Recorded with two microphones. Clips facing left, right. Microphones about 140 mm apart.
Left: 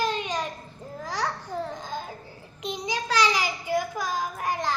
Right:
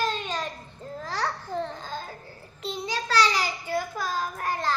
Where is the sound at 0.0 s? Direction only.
15° left (ahead or behind).